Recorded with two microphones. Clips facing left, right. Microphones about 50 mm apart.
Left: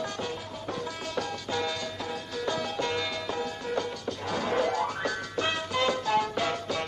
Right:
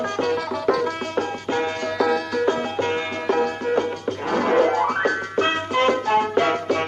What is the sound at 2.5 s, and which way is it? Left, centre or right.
Music, right.